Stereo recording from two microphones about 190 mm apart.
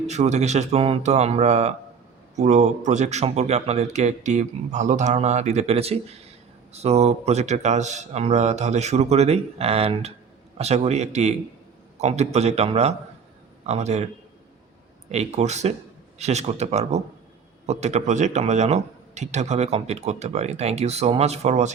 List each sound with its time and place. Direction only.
0.1 s speech: 35° right (ahead or behind)
15.1 s speech: 35° right (ahead or behind)